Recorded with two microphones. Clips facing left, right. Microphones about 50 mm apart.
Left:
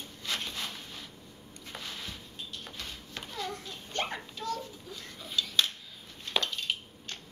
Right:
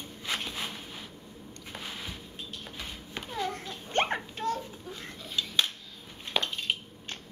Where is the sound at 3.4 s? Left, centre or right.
Right.